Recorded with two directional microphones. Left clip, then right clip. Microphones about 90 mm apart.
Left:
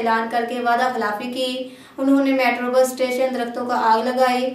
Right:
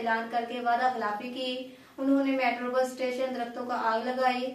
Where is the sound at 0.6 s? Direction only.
25° left (ahead or behind).